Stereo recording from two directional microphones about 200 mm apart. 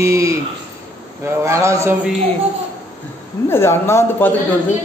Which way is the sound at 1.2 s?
15° right (ahead or behind).